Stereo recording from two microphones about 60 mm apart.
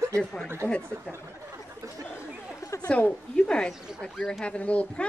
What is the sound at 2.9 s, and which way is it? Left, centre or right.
A woman's voice, centre.